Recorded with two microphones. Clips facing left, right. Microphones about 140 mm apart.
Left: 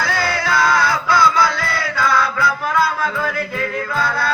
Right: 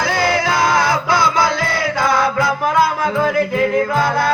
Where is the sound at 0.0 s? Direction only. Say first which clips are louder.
Right 4 dB; 15° right (ahead or behind).